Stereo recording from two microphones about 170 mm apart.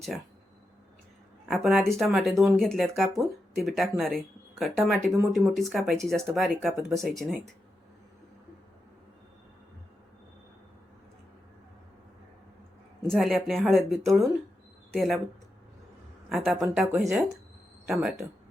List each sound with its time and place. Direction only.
1.5 s speech: centre (ahead or behind)
13.1 s speech: centre (ahead or behind)
16.3 s speech: centre (ahead or behind)